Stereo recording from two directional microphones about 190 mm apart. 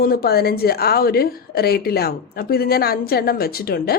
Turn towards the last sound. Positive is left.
turn(degrees=55)  # may be behind; listen again after turning